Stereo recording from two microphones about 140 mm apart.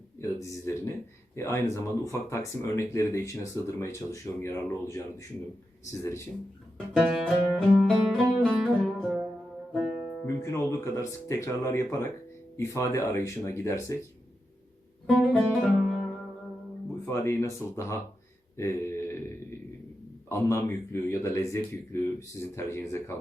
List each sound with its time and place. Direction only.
0.2 s speech: 20° left (ahead or behind)
6.0 s speech: 20° left (ahead or behind)
6.9 s music: centre (ahead or behind)
10.2 s speech: 20° left (ahead or behind)
15.0 s music: 5° left (ahead or behind)
17.1 s speech: 20° left (ahead or behind)
18.5 s a sound: 20° left (ahead or behind)
20.3 s speech: 20° left (ahead or behind)